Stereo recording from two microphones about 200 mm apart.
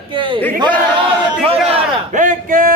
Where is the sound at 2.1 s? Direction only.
40° right (ahead or behind).